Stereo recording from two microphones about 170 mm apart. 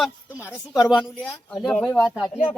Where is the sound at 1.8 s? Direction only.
Centre (ahead or behind).